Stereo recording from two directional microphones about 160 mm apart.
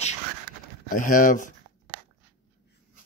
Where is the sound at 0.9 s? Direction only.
55° left (ahead or behind).